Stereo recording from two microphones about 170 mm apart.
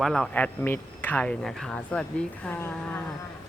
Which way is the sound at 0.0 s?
5° left (ahead or behind).